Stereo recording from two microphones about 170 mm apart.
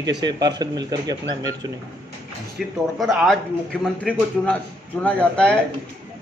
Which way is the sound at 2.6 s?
Centre (ahead or behind).